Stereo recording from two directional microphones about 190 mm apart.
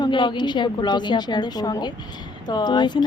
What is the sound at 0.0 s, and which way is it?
A woman's voice, 25° left (ahead or behind).